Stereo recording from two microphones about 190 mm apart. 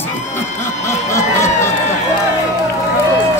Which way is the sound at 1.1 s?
15° left (ahead or behind).